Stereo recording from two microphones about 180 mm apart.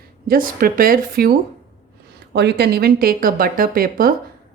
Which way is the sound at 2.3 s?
65° right (ahead or behind).